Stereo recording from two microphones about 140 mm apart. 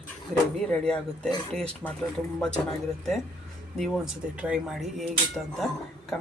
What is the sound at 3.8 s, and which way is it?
Speech, 5° right (ahead or behind).